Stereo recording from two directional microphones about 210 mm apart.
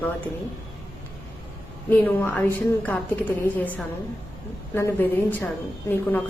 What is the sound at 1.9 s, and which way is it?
A woman's voice, 10° left (ahead or behind).